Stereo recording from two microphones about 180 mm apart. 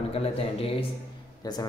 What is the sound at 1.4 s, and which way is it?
Speech, 20° left (ahead or behind).